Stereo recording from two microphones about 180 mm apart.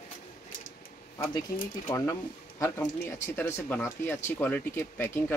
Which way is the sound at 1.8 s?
15° left (ahead or behind).